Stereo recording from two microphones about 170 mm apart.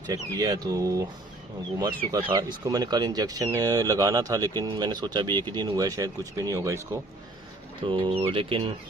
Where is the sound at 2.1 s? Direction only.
25° right (ahead or behind).